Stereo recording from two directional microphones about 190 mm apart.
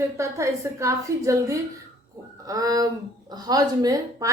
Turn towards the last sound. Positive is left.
turn(degrees=-20)  # may be behind; listen again after turning